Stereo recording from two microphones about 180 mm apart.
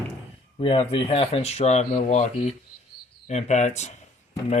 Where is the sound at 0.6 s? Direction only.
30° left (ahead or behind).